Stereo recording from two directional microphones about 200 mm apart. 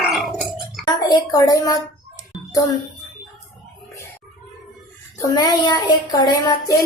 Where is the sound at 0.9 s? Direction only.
20° left (ahead or behind).